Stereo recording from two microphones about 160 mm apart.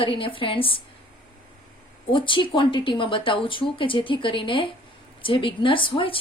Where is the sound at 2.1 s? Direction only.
30° left (ahead or behind).